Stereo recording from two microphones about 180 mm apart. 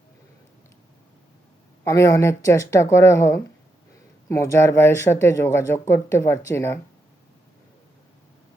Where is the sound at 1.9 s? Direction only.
15° left (ahead or behind).